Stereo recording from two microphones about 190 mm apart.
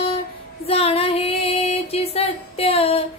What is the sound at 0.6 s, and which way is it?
Female singing, 30° left (ahead or behind).